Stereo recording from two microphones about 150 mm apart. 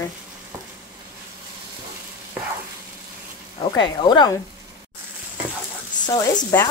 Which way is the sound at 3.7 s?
30° left (ahead or behind).